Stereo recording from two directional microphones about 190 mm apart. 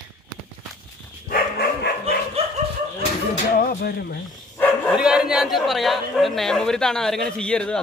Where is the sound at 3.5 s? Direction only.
50° left (ahead or behind).